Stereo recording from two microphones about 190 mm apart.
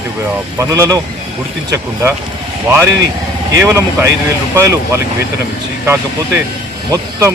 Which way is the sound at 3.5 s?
15° right (ahead or behind).